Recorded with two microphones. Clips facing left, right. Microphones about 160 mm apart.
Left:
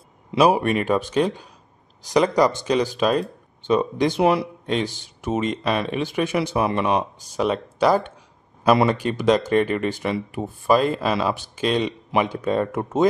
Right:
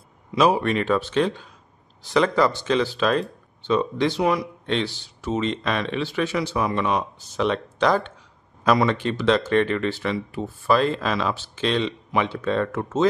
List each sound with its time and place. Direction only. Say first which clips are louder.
0.4 s speech: left 2 dB; 15° left (ahead or behind)